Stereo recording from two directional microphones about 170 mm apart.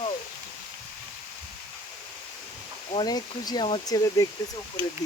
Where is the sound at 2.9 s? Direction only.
25° left (ahead or behind).